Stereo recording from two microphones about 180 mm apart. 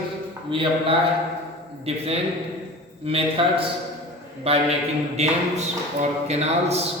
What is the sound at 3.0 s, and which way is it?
Speech, 30° right (ahead or behind).